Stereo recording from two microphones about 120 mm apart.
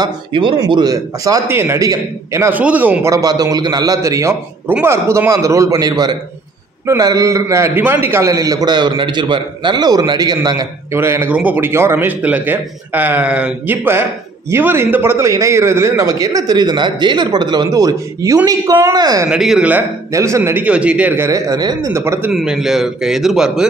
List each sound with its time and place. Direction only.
0.0 s a man's voice: 45° right (ahead or behind); by 2.5 s 25° right (ahead or behind)
2.5 s speech: 15° right (ahead or behind)
3.1 s a man's voice: 30° right (ahead or behind)
10.9 s a man's voice: 20° right (ahead or behind)
19.2 s a man's voice: 5° right (ahead or behind)
20.1 s a man's voice: 25° right (ahead or behind)
20.6 s speech: 10° right (ahead or behind)
21.2 s a man's voice: 30° right (ahead or behind)
22.0 s a man's voice: 20° right (ahead or behind)
22.3 s a man's voice: 5° right (ahead or behind)